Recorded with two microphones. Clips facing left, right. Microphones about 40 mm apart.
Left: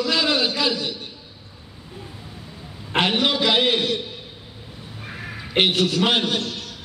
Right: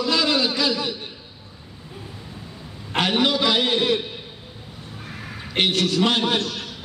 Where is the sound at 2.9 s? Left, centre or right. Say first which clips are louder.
Left 2 dB; centre.